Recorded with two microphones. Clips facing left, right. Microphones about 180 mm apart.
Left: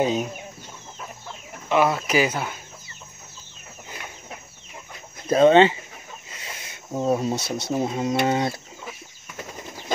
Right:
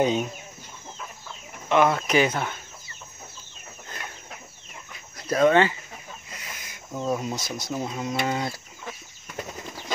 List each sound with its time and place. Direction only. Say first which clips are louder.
0.0 s speech: even; 5° left (ahead or behind)
1.7 s speech: even; 5° left (ahead or behind)
5.3 s speech: left 5 dB; 25° left (ahead or behind)
6.3 s snake: left 2 dB; 30° left (ahead or behind)
7.3 s speech: left 5 dB; 65° left (ahead or behind)
7.7 s speech: left 6 dB; 30° left (ahead or behind)